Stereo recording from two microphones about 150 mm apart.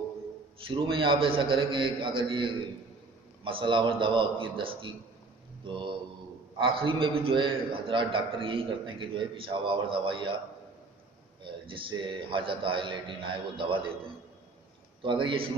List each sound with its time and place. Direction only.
0.6 s a man's voice: 35° right (ahead or behind)
11.6 s a man's voice: 35° right (ahead or behind)
15.0 s a man's voice: 35° right (ahead or behind)